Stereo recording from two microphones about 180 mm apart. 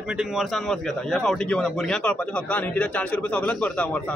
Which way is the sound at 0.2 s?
Centre (ahead or behind).